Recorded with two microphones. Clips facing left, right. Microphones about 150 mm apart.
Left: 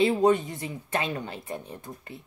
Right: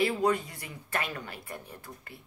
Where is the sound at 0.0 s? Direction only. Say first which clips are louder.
Left 6 dB; 20° left (ahead or behind).